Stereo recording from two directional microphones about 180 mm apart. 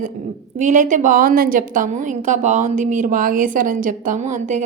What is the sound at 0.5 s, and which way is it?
A woman's voice, 45° right (ahead or behind).